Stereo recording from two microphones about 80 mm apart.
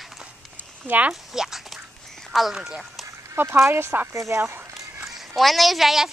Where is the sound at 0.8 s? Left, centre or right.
Centre.